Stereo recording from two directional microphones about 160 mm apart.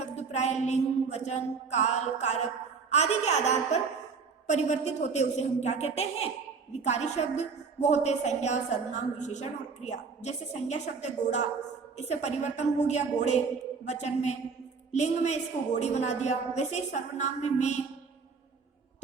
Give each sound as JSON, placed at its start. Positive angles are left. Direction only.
{"t": 0.0, "sound": "mantra", "side_deg": 45}
{"t": 2.9, "sound": "a woman's voice", "side_deg": 45}